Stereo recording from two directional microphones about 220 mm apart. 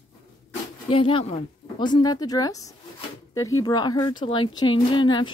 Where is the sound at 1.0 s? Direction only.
25° left (ahead or behind).